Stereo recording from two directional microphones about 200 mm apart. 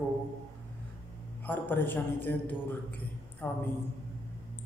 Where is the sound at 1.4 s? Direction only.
10° left (ahead or behind).